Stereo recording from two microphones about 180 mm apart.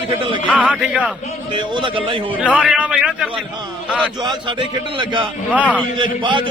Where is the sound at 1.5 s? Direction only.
25° right (ahead or behind).